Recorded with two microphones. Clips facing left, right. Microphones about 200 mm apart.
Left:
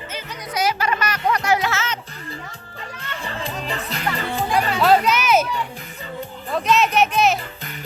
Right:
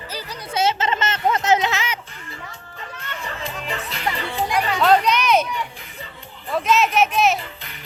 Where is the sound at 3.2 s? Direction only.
35° left (ahead or behind).